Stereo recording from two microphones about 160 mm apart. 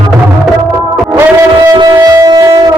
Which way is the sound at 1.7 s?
25° right (ahead or behind).